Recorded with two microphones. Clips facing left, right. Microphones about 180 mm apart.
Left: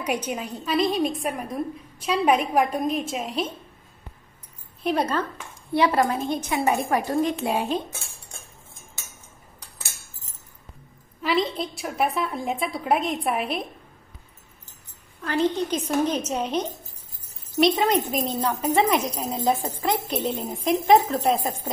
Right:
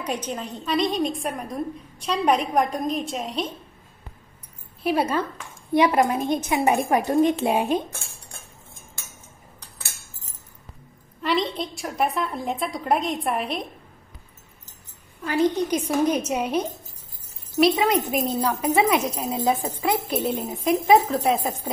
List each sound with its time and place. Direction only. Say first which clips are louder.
0.0 s a woman's voice: left 1 dB; 10° left (ahead or behind)
4.8 s a woman's voice: right 1 dB; 10° right (ahead or behind)
11.2 s a woman's voice: even; centre (ahead or behind)
15.2 s a woman's voice: right 2 dB; 10° right (ahead or behind)